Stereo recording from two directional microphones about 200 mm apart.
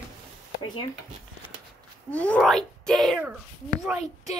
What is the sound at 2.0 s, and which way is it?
Speech, 5° left (ahead or behind).